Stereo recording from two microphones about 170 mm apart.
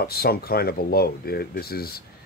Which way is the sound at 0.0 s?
65° left (ahead or behind).